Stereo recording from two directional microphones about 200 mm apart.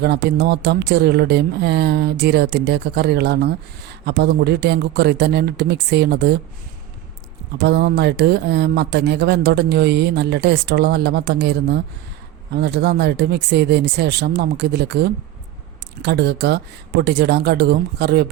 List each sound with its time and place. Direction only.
0.0 s speech: 55° right (ahead or behind)
7.6 s speech: 55° right (ahead or behind)